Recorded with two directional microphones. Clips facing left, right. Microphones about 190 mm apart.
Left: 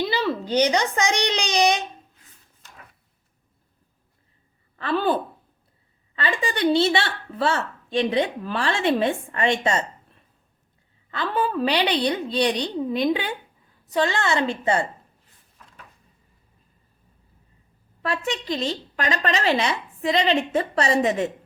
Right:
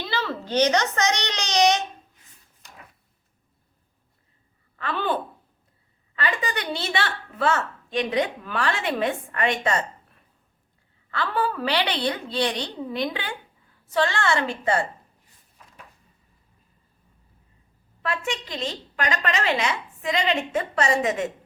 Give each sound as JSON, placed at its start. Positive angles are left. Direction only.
{"t": 0.1, "sound": "babbling", "side_deg": 15}
{"t": 4.8, "sound": "a woman's voice", "side_deg": 35}
{"t": 11.1, "sound": "a woman's voice", "side_deg": 20}
{"t": 18.0, "sound": "a woman's voice", "side_deg": 35}